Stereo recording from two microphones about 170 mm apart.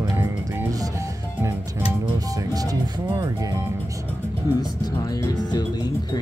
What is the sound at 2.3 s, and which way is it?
Music, 20° right (ahead or behind).